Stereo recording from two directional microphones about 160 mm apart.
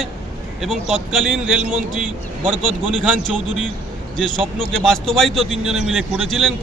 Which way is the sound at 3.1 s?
5° left (ahead or behind).